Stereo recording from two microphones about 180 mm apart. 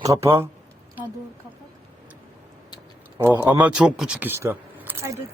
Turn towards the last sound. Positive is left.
turn(degrees=-15)  # may be behind; listen again after turning